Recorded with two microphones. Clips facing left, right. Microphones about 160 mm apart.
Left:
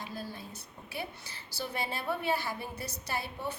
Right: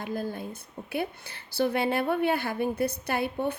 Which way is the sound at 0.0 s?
50° right (ahead or behind).